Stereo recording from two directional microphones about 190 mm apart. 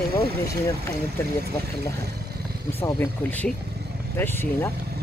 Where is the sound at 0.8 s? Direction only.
15° left (ahead or behind).